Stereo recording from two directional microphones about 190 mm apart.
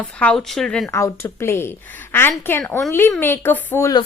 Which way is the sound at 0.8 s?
15° left (ahead or behind).